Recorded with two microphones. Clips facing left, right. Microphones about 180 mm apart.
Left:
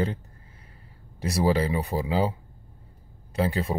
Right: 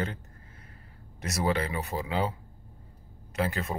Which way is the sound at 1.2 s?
30° left (ahead or behind).